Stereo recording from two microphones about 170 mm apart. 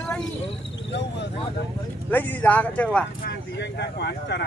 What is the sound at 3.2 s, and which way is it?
Speech, 85° left.